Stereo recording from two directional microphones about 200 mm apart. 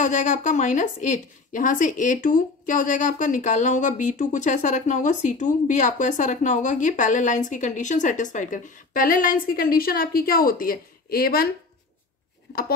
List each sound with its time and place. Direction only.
0.0 s a woman's voice: 40° left (ahead or behind)